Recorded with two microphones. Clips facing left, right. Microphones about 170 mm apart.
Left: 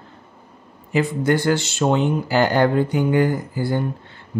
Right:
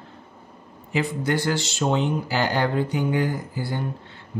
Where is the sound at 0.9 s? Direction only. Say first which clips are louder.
Left 5 dB; 50° left (ahead or behind).